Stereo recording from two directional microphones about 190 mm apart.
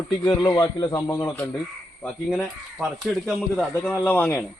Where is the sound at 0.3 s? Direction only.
25° left (ahead or behind).